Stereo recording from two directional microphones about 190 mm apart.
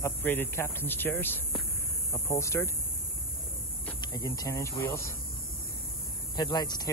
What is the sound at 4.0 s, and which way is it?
Speech, 20° left (ahead or behind).